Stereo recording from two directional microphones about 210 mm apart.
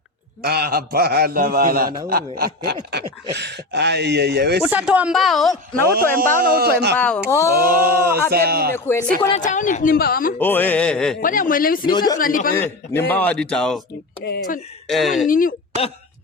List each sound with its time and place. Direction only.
0.4 s a sound: 45° right (ahead or behind)
4.6 s speech: 5° right (ahead or behind)
5.9 s a sound: 45° right (ahead or behind)
7.0 s speech: 10° left (ahead or behind)
7.6 s a sound: 45° right (ahead or behind)
9.4 s speech: 35° left (ahead or behind)
10.3 s speech: 10° left (ahead or behind)
11.2 s speech: 40° left (ahead or behind)
11.9 s speech: 20° left (ahead or behind)
12.2 s speech: 40° left (ahead or behind)
12.5 s speech: 10° left (ahead or behind)
14.3 s speech: 45° left (ahead or behind)
14.8 s speech: centre (ahead or behind)
15.3 s speech: 40° left (ahead or behind)